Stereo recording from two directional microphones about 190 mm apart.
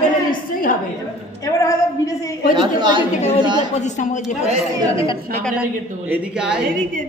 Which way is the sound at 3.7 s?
40° left (ahead or behind).